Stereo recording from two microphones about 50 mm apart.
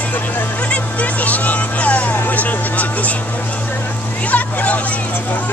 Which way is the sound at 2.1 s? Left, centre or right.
Left.